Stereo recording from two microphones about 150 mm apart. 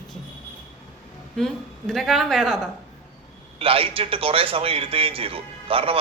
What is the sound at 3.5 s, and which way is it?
A man's voice, 40° right (ahead or behind).